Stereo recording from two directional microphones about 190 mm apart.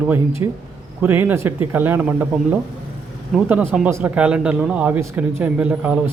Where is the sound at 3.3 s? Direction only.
5° right (ahead or behind).